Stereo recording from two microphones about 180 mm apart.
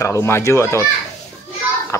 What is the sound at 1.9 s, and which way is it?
Speech, 15° left (ahead or behind).